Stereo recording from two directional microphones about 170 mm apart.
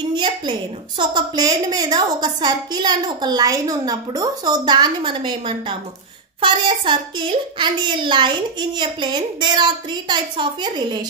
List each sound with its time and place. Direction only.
0.1 s a woman's voice: 30° right (ahead or behind)